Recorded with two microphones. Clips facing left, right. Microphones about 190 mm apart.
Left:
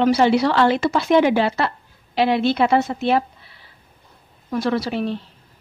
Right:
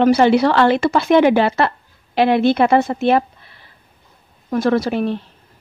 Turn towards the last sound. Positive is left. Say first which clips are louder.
# right 4 dB
turn(degrees=-55)  # may be behind; listen again after turning